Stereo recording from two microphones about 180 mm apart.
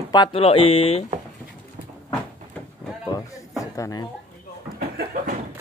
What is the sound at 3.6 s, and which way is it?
Speech, 20° left (ahead or behind).